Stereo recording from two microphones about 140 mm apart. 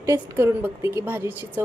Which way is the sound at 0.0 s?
20° right (ahead or behind).